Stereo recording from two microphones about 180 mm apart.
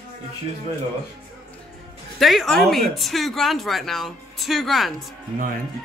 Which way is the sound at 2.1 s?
Centre (ahead or behind).